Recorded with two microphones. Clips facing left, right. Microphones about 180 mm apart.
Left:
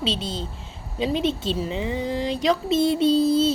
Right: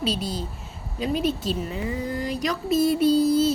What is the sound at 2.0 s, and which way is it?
Speech, 25° left (ahead or behind).